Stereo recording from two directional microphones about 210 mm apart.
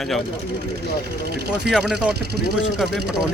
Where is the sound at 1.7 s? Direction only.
Centre (ahead or behind).